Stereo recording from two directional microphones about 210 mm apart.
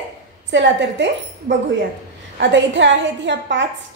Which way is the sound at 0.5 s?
60° right (ahead or behind).